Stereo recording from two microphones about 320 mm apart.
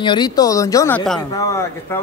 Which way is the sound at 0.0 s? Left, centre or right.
Centre.